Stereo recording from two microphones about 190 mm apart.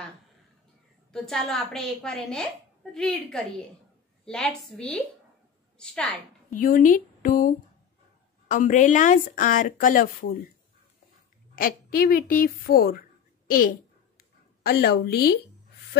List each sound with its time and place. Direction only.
1.1 s a woman's voice: 5° left (ahead or behind)
6.5 s speech: 45° left (ahead or behind)
11.5 s speech: 50° left (ahead or behind)
13.5 s a sound: 45° left (ahead or behind)